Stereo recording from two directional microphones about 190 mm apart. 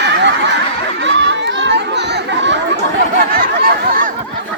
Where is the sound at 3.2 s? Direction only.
50° right (ahead or behind).